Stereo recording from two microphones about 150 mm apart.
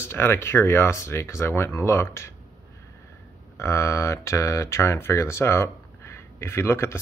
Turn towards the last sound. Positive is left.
turn(degrees=15)  # may be behind; listen again after turning